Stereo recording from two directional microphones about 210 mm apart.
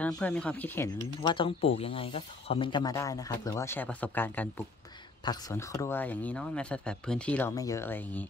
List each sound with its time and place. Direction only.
0.2 s speech: 5° left (ahead or behind)